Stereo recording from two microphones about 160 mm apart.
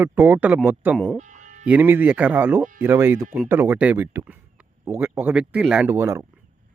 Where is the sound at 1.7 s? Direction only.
10° right (ahead or behind).